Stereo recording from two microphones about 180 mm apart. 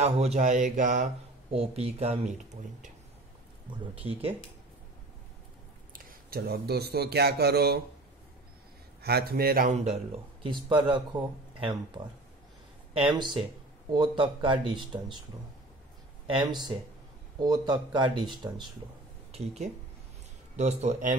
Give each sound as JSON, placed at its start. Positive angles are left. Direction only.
{"t": 0.0, "sound": "speech", "side_deg": -35}
{"t": 4.0, "sound": "speech", "side_deg": -30}
{"t": 5.9, "sound": "speech", "side_deg": -55}
{"t": 9.0, "sound": "a man's voice", "side_deg": -60}
{"t": 10.4, "sound": "speech", "side_deg": -25}
{"t": 16.3, "sound": "speech", "side_deg": -25}
{"t": 19.3, "sound": "a sound", "side_deg": -35}
{"t": 20.5, "sound": "speech", "side_deg": -40}